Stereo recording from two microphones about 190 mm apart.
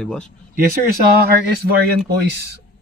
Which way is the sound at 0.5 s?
50° right (ahead or behind).